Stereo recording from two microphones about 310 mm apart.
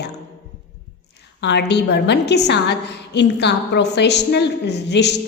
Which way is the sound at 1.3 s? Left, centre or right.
Left.